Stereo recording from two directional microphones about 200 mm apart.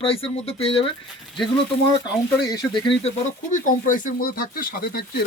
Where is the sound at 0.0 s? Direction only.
30° left (ahead or behind).